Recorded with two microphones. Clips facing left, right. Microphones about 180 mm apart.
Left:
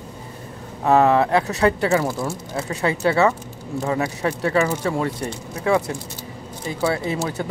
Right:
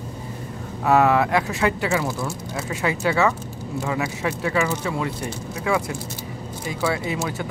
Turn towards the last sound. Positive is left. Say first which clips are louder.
# left 2 dB
turn(degrees=35)  # may be behind; listen again after turning